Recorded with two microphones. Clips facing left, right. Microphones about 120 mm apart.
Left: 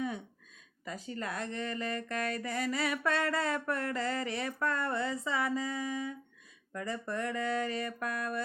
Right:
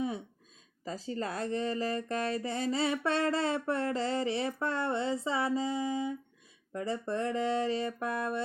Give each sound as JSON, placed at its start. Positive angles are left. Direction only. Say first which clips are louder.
{"t": 0.9, "sound": "speech", "louder": "right 3 dB", "side_deg": -30}